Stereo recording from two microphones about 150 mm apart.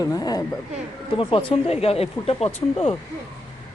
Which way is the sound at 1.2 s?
35° left (ahead or behind).